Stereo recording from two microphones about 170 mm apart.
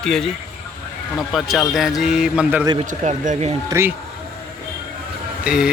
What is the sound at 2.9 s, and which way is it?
Speech, 45° right (ahead or behind).